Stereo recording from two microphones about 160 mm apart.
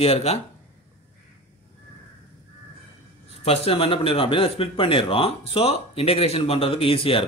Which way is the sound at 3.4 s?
40° left (ahead or behind).